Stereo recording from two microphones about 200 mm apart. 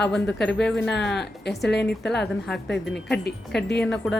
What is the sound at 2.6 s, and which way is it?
Speech, 60° left (ahead or behind).